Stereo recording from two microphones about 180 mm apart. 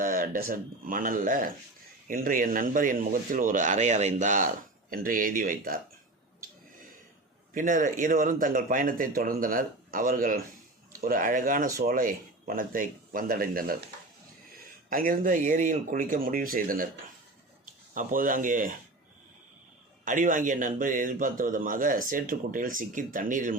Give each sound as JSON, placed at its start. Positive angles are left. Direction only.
{"t": 0.0, "sound": "speech", "side_deg": -50}
{"t": 7.5, "sound": "speech", "side_deg": -45}
{"t": 14.8, "sound": "speech", "side_deg": -50}
{"t": 17.9, "sound": "speech", "side_deg": -50}
{"t": 20.1, "sound": "speech", "side_deg": -45}